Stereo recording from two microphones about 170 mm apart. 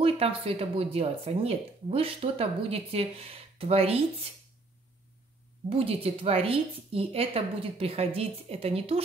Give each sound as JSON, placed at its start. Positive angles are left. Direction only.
{"t": 0.0, "sound": "speech", "side_deg": -35}
{"t": 5.7, "sound": "speech", "side_deg": -35}